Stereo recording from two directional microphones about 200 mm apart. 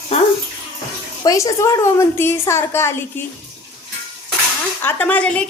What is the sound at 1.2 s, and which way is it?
A woman's voice, 20° left (ahead or behind).